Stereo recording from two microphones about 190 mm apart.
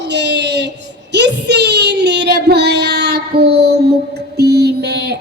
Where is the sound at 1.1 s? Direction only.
65° right (ahead or behind).